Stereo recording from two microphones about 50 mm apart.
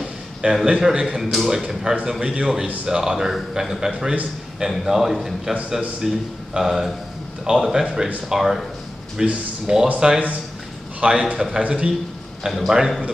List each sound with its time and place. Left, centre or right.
0.4 s a man's voice: right
1.1 s a man's voice: centre
12.4 s a man's voice: centre